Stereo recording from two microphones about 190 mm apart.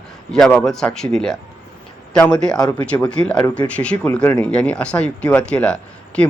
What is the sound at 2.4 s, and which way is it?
Speech, 5° left (ahead or behind).